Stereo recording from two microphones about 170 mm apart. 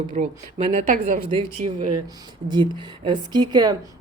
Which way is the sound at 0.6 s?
40° right (ahead or behind).